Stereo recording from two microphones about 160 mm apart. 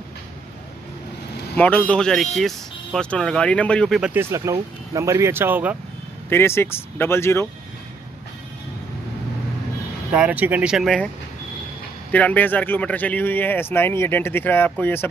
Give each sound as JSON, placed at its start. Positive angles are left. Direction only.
{"t": 1.6, "sound": "speech", "side_deg": 10}
{"t": 4.0, "sound": "speech", "side_deg": -15}
{"t": 6.2, "sound": "speech", "side_deg": 15}
{"t": 10.1, "sound": "speech", "side_deg": -10}
{"t": 12.1, "sound": "speech", "side_deg": 10}